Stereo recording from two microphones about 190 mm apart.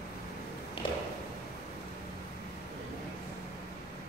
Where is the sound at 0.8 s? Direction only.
30° left (ahead or behind).